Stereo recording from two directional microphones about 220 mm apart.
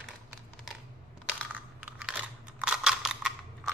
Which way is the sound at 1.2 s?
5° right (ahead or behind).